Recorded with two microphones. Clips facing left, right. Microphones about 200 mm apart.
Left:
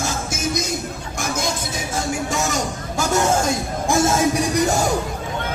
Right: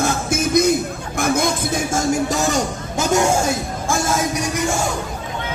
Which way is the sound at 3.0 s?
15° right (ahead or behind).